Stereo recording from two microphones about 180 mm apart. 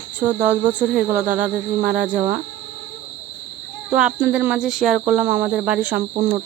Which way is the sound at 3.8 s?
5° right (ahead or behind).